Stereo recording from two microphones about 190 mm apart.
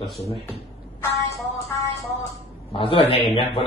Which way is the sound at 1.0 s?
15° left (ahead or behind).